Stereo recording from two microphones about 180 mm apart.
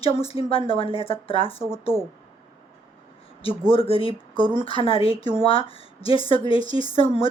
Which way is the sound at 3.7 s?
30° left (ahead or behind).